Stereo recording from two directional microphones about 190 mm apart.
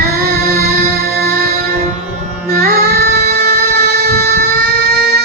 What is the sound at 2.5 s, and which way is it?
Child singing, 55° right (ahead or behind).